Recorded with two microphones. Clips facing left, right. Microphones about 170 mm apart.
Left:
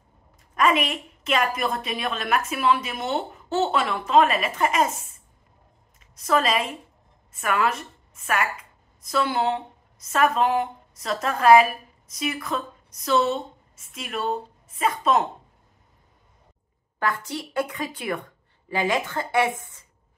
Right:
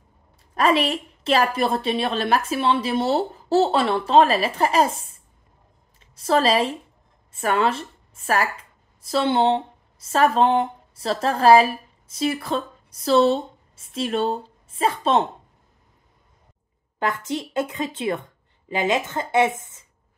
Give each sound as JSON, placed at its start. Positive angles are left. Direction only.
{"t": 0.6, "sound": "a woman's voice", "side_deg": -35}
{"t": 17.0, "sound": "a woman's voice", "side_deg": -20}